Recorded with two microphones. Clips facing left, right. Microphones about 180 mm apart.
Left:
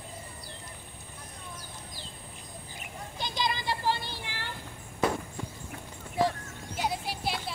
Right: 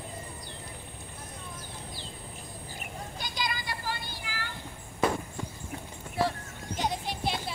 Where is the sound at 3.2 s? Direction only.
25° left (ahead or behind).